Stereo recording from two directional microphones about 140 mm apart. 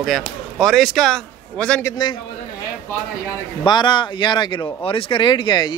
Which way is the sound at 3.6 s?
30° left (ahead or behind).